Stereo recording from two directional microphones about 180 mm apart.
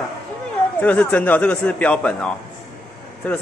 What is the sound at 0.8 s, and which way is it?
Speech, 10° left (ahead or behind).